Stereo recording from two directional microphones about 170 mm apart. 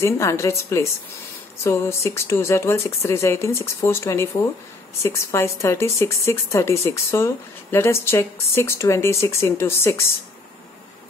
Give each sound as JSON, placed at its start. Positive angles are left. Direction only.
{"t": 0.0, "sound": "speech", "side_deg": 15}